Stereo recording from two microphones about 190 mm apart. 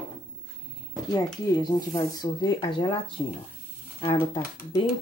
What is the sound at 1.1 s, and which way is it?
Speech, 20° left (ahead or behind).